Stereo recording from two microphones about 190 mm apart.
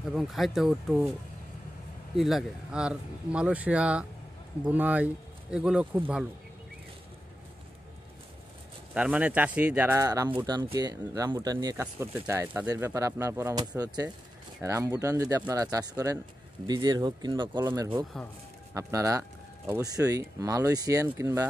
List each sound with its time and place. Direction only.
0.1 s speech: centre (ahead or behind)
2.1 s speech: centre (ahead or behind)
8.9 s speech: 5° right (ahead or behind)